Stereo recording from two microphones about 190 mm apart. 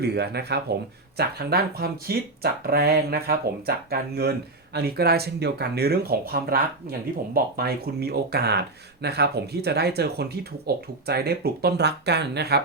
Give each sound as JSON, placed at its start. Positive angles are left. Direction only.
{"t": 0.0, "sound": "speech", "side_deg": -60}